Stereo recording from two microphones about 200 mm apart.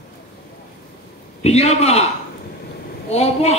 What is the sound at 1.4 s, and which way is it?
Speech, 30° left (ahead or behind).